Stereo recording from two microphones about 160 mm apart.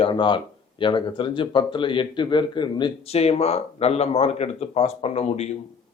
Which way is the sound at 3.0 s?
40° left (ahead or behind).